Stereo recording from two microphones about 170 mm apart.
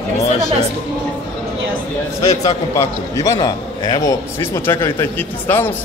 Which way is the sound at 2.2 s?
20° left (ahead or behind).